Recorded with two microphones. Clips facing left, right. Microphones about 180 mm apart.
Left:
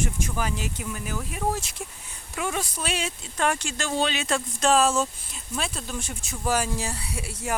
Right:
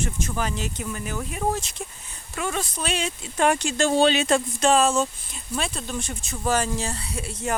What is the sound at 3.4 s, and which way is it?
Speech, 20° right (ahead or behind).